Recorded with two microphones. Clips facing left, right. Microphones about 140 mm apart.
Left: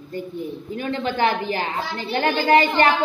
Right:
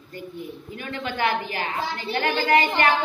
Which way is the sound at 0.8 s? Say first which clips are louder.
Left 5 dB; 30° left (ahead or behind).